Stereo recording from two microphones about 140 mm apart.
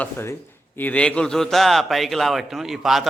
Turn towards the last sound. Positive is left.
turn(degrees=0)  # may be behind; listen again after turning